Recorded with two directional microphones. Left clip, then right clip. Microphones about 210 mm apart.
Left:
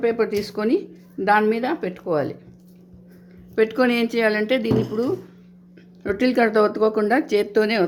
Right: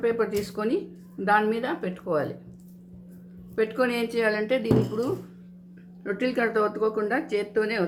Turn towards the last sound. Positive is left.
turn(degrees=45)  # may be behind; listen again after turning